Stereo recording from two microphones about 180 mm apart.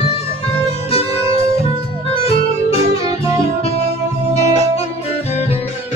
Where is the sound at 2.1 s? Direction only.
35° left (ahead or behind).